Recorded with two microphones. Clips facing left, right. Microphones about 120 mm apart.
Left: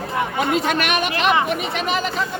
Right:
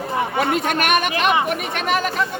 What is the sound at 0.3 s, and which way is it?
Speech, 55° right (ahead or behind).